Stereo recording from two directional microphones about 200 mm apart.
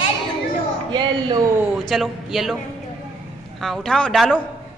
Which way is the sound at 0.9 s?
20° right (ahead or behind).